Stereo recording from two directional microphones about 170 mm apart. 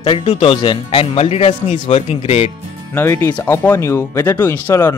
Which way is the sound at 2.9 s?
15° left (ahead or behind).